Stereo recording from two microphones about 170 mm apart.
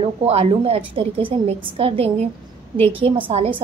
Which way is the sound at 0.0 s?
35° right (ahead or behind).